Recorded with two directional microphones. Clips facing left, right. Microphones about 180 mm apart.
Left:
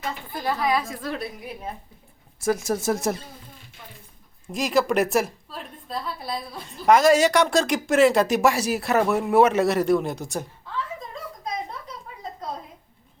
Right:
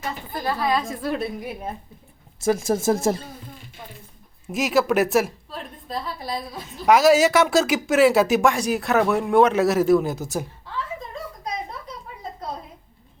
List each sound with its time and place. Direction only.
0.6 s a woman's voice: 10° left (ahead or behind)
1.0 s a woman's voice: 15° right (ahead or behind)
2.4 s speech: 30° right (ahead or behind)
4.4 s a woman's voice: 5° right (ahead or behind)